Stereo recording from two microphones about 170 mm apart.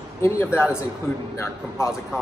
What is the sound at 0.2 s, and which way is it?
Speech, 15° left (ahead or behind).